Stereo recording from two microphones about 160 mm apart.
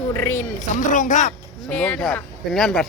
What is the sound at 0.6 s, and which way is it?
Speech, 55° left (ahead or behind).